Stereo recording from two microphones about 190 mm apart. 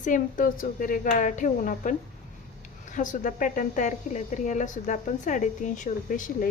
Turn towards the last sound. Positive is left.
turn(degrees=45)  # may be behind; listen again after turning